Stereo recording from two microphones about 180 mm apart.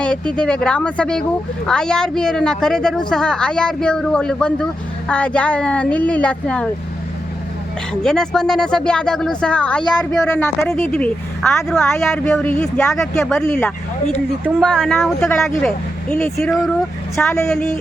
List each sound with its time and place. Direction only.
0.0 s speech: 5° left (ahead or behind)
8.0 s speech: 5° left (ahead or behind)
14.6 s speech: 5° left (ahead or behind)
17.2 s speech: 15° left (ahead or behind)
17.5 s speech: 5° left (ahead or behind)